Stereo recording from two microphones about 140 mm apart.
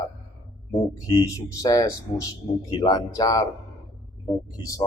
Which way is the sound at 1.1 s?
25° left (ahead or behind).